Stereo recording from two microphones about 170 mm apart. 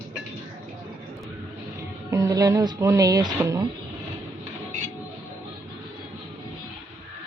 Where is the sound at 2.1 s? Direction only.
20° right (ahead or behind).